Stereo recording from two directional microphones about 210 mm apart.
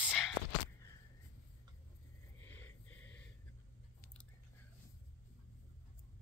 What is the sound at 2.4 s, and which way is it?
Wheeze, 10° left (ahead or behind).